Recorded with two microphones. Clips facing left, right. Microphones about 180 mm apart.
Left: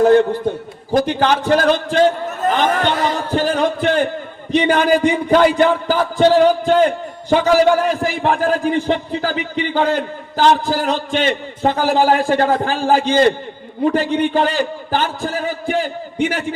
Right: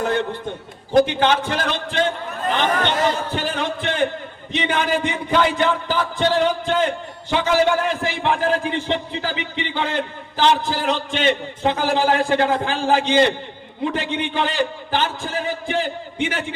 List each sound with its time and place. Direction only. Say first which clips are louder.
1.0 s a man's voice: left 3 dB; 40° left (ahead or behind)
3.3 s a sound: left 7 dB; 45° left (ahead or behind)
4.5 s a man's voice: left 7 dB; 40° left (ahead or behind)